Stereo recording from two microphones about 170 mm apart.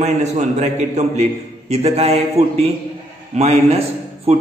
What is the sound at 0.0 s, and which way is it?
A man's voice, 40° right (ahead or behind).